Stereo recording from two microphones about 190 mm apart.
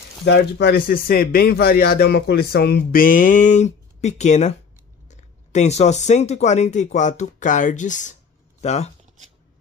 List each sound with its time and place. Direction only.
0.2 s speech: 60° left (ahead or behind); by 8.9 s 35° left (ahead or behind)